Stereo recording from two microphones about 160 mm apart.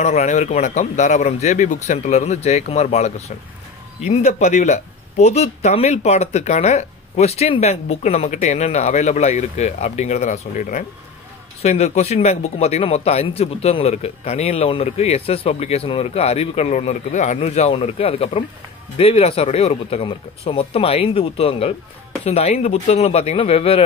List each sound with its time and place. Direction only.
0.0 s speech: 45° left (ahead or behind)
11.6 s a man's voice: 45° left (ahead or behind)